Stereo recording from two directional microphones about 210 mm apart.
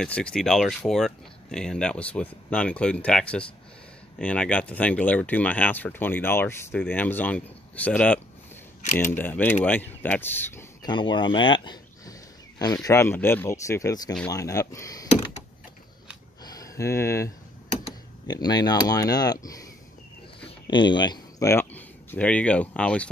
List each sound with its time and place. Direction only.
0.0 s speech: 5° left (ahead or behind)
16.4 s a sound: 15° left (ahead or behind)
18.2 s speech: 20° left (ahead or behind)